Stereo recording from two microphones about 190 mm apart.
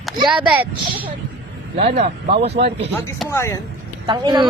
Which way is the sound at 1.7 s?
35° right (ahead or behind).